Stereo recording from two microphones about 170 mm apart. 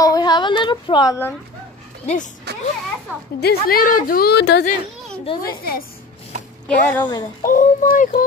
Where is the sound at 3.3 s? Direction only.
65° left (ahead or behind); by 4.6 s 80° left.